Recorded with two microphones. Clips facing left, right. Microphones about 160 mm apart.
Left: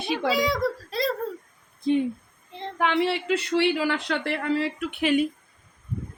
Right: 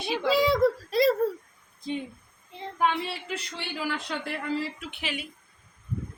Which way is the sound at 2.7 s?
70° left (ahead or behind).